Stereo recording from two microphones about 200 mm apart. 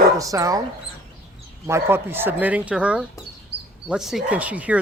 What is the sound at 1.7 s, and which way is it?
Speech, 10° right (ahead or behind).